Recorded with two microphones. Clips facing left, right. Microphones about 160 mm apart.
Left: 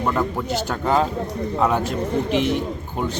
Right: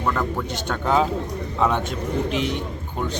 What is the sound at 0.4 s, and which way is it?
Speech, 5° left (ahead or behind).